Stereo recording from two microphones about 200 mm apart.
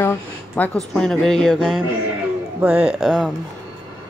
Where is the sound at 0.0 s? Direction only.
10° left (ahead or behind).